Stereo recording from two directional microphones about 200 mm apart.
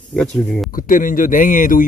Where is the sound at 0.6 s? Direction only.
45° left (ahead or behind).